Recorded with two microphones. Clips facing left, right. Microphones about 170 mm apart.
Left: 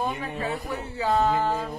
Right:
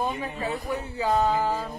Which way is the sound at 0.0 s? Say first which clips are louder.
Even; 20° right (ahead or behind).